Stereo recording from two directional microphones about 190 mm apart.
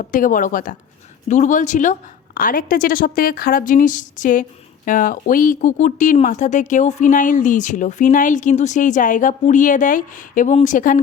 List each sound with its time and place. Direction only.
0.0 s a woman's voice: 45° left (ahead or behind)